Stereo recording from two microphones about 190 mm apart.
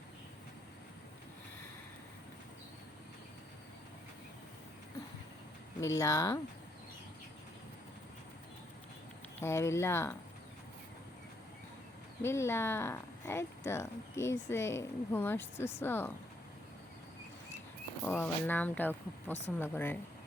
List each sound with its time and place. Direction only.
5.8 s speech: 15° left (ahead or behind)
9.4 s speech: 15° left (ahead or behind)
12.2 s speech: 15° left (ahead or behind)
18.0 s speech: 10° left (ahead or behind)